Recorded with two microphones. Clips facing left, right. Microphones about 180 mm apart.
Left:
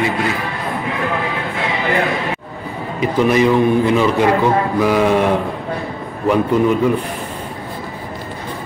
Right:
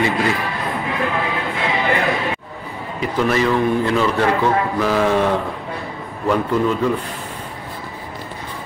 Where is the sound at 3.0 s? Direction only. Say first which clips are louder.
Left 4 dB; 15° left (ahead or behind).